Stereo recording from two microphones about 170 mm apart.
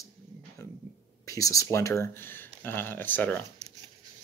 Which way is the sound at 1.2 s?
20° left (ahead or behind).